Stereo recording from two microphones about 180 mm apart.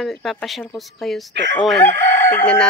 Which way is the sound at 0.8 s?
Centre (ahead or behind).